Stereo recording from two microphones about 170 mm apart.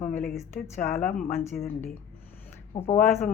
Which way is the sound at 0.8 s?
55° left (ahead or behind).